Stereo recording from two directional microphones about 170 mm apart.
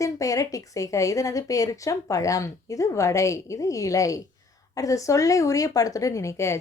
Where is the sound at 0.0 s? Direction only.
20° left (ahead or behind).